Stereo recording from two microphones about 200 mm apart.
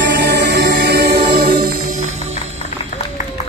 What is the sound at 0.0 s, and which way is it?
Music, 60° right (ahead or behind).